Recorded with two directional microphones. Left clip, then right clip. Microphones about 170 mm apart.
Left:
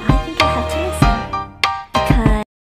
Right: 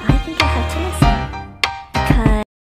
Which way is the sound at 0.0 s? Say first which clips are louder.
Left 2 dB; centre (ahead or behind).